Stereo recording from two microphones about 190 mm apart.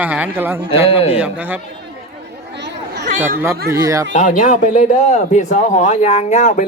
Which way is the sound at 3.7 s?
15° right (ahead or behind).